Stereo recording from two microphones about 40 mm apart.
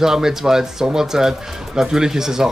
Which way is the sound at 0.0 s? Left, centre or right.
Centre.